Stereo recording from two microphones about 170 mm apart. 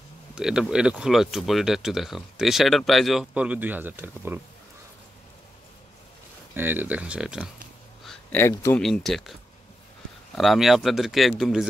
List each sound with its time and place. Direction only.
0.4 s speech: 5° right (ahead or behind)
6.5 s speech: 10° right (ahead or behind)
8.0 s a sound: centre (ahead or behind)
8.4 s speech: 15° left (ahead or behind)
8.8 s speech: centre (ahead or behind)
10.3 s speech: centre (ahead or behind)